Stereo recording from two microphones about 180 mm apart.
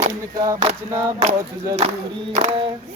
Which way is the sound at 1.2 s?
35° right (ahead or behind).